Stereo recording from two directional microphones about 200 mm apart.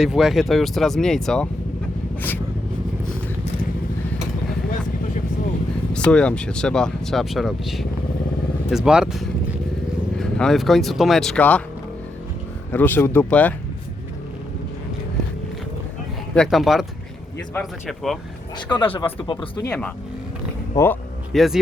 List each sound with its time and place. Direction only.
0.0 s speech: centre (ahead or behind)
5.9 s speech: 5° left (ahead or behind)
12.7 s speech: 10° left (ahead or behind)
16.3 s speech: centre (ahead or behind)
18.7 s speech: 25° left (ahead or behind)
20.7 s speech: 10° left (ahead or behind)
21.3 s speech: centre (ahead or behind)